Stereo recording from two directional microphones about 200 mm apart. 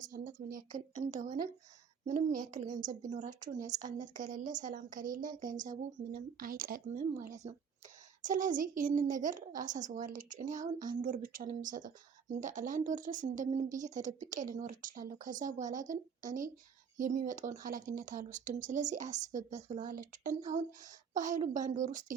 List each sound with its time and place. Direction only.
0.0 s a woman's voice: 40° right (ahead or behind)